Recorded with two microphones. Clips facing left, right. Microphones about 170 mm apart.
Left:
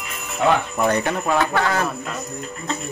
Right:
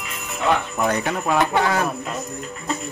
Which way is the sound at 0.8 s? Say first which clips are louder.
Left 2 dB; 5° right (ahead or behind).